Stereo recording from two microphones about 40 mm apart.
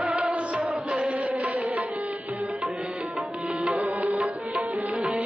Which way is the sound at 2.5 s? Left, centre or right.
Right.